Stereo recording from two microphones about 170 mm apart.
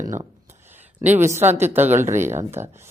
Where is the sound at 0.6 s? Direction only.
10° right (ahead or behind).